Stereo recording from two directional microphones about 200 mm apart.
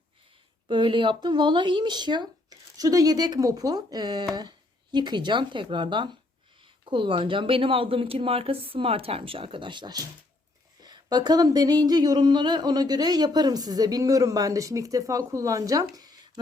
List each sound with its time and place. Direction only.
0.7 s speech: 25° right (ahead or behind)